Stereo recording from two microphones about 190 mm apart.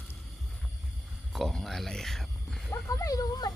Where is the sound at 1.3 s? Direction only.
Centre (ahead or behind).